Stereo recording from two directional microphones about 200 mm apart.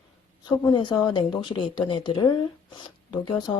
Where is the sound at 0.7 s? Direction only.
20° left (ahead or behind).